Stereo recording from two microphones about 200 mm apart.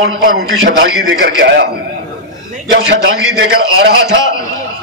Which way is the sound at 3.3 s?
55° right (ahead or behind).